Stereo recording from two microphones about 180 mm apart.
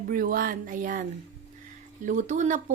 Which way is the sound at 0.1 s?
50° right (ahead or behind).